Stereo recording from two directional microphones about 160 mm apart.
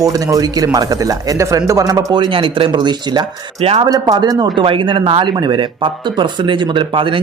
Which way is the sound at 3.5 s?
40° right (ahead or behind).